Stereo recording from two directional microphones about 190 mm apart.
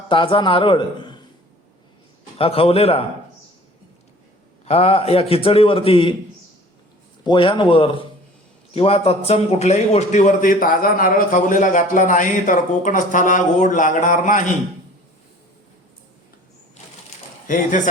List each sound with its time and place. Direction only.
0.1 s a man's voice: 25° left (ahead or behind)
2.4 s a man's voice: 30° left (ahead or behind)
4.6 s a man's voice: 30° left (ahead or behind)
7.3 s a man's voice: 25° left (ahead or behind); by 14.4 s 40° left (ahead or behind)
17.5 s a man's voice: 45° left (ahead or behind)